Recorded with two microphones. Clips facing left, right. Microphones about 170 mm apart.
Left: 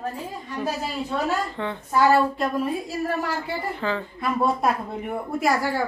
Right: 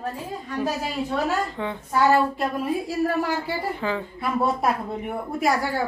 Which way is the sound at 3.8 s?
10° right (ahead or behind).